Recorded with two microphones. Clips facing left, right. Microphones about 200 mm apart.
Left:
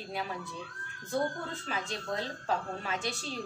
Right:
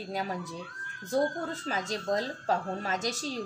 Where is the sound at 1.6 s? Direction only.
40° right (ahead or behind).